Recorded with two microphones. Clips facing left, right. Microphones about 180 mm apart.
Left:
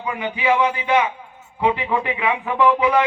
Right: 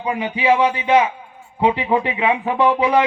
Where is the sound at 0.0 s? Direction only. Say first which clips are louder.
Right 3 dB; 30° right (ahead or behind).